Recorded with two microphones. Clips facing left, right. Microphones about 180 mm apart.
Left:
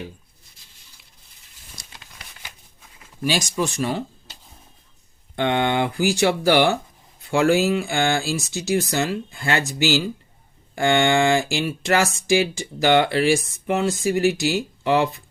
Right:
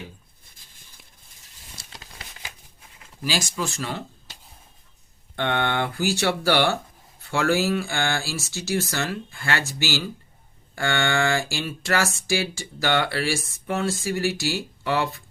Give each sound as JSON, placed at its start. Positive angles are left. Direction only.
{"t": 3.2, "sound": "speech", "side_deg": 20}
{"t": 5.4, "sound": "speech", "side_deg": 15}